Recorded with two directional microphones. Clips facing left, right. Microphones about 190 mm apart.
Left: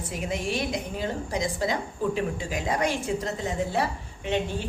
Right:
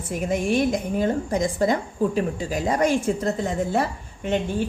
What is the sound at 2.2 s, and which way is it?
A woman's voice, 40° right (ahead or behind).